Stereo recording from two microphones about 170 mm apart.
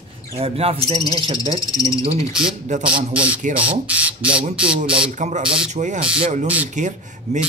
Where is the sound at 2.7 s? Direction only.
45° right (ahead or behind).